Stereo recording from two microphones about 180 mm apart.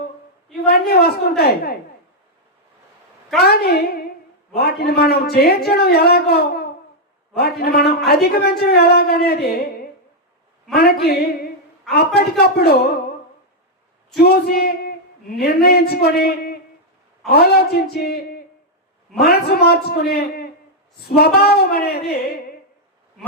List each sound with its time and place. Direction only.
0.5 s a woman's voice: 60° left (ahead or behind)
3.4 s a man's voice: 60° left (ahead or behind)
14.2 s female singing: 60° left (ahead or behind)
15.4 s a man's voice: 60° left (ahead or behind)